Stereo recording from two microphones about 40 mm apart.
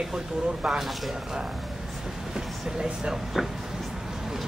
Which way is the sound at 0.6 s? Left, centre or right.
Centre.